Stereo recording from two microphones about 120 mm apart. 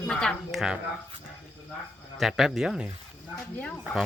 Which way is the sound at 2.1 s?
5° right (ahead or behind).